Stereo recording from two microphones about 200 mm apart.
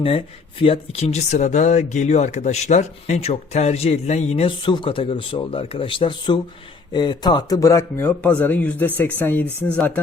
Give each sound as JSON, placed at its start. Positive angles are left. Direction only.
{"t": 0.6, "sound": "speech", "side_deg": 30}